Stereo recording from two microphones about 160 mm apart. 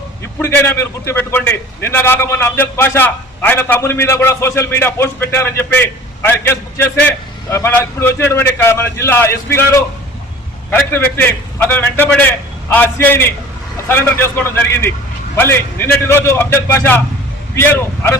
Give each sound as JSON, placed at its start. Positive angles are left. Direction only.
{"t": 0.4, "sound": "a man's voice", "side_deg": 15}